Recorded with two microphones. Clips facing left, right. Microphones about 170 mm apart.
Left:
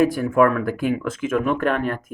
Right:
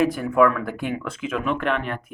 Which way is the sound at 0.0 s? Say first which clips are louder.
Left 2 dB; 45° left (ahead or behind).